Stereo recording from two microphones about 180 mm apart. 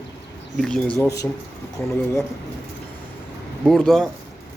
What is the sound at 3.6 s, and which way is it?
Speech, centre (ahead or behind).